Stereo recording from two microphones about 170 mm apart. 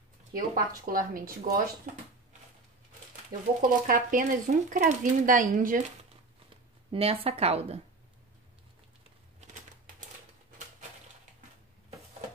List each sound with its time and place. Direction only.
0.3 s speech: 55° right (ahead or behind)
3.3 s speech: 25° right (ahead or behind)
3.6 s speech: 50° right (ahead or behind)
6.9 s speech: 35° right (ahead or behind)